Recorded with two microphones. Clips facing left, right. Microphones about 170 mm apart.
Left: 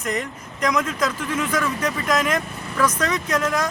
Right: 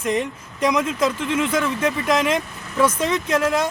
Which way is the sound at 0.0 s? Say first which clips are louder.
Right 4 dB; 25° right (ahead or behind).